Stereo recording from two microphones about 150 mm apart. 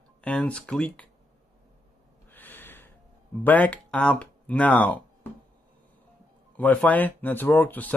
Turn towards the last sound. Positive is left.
turn(degrees=10)  # may be behind; listen again after turning